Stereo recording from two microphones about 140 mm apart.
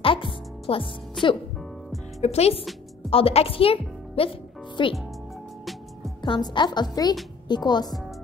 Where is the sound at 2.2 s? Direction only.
50° left (ahead or behind).